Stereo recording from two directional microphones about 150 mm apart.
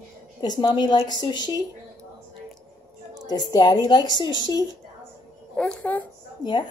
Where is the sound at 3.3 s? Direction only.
25° left (ahead or behind).